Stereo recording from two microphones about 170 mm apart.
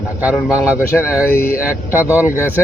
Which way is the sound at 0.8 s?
15° left (ahead or behind).